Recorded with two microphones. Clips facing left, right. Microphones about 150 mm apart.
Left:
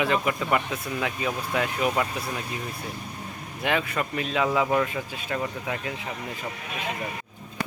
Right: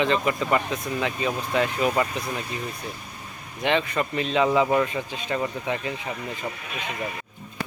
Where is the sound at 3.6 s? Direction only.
5° left (ahead or behind).